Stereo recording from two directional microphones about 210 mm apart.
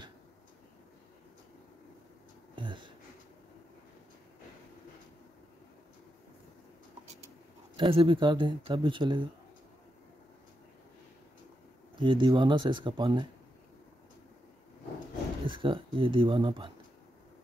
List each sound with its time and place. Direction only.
2.5 s a sound: 25° right (ahead or behind)
7.7 s speech: 25° right (ahead or behind)
12.0 s speech: 20° right (ahead or behind)
15.4 s speech: 25° right (ahead or behind)